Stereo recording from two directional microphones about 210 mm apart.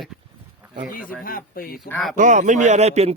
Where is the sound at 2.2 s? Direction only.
35° right (ahead or behind).